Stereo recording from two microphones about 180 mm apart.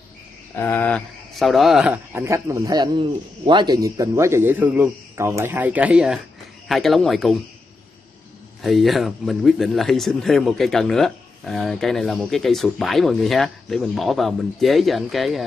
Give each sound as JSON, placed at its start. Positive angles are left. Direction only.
{"t": 0.6, "sound": "speech", "side_deg": 10}
{"t": 2.1, "sound": "a man's voice", "side_deg": -15}
{"t": 8.6, "sound": "speech", "side_deg": 0}